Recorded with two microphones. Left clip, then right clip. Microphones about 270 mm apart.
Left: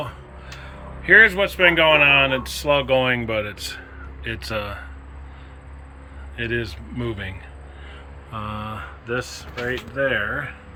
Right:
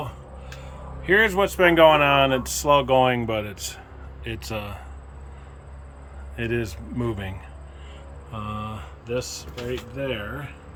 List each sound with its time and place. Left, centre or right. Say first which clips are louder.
0.6 s speech: left 5 dB; centre
6.3 s speech: left 2 dB; centre
8.3 s a sound: left 3 dB; centre
10.1 s speech: left 8 dB; left